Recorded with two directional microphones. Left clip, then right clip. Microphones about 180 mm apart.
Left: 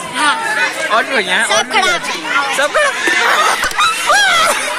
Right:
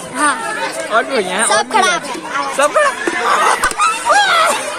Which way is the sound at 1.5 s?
60° right (ahead or behind).